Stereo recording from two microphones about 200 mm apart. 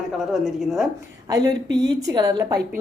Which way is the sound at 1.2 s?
20° right (ahead or behind).